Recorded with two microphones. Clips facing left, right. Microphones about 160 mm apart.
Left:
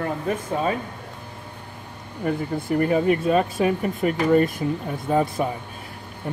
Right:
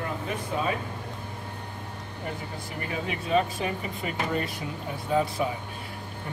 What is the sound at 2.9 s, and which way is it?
Speech, 50° left (ahead or behind).